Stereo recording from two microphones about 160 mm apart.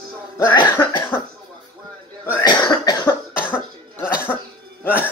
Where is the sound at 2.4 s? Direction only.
25° left (ahead or behind).